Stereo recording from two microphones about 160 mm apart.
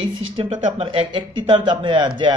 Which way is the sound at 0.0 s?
30° right (ahead or behind).